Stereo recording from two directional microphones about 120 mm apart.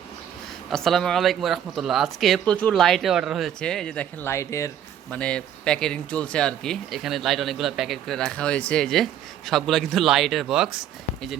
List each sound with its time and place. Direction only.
0.7 s speech: 5° left (ahead or behind)
4.3 s speech: 25° left (ahead or behind)
5.1 s speech: 10° left (ahead or behind)